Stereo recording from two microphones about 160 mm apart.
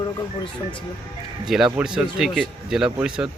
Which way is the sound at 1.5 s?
Centre (ahead or behind).